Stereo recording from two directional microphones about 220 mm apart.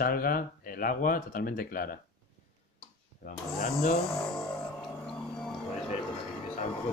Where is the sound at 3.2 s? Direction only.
40° left (ahead or behind).